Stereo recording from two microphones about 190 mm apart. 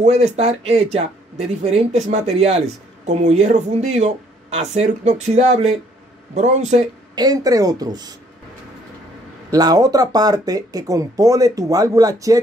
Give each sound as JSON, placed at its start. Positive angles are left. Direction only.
{"t": 0.0, "sound": "speech", "side_deg": -35}
{"t": 7.2, "sound": "speech", "side_deg": -20}
{"t": 9.5, "sound": "speech", "side_deg": -20}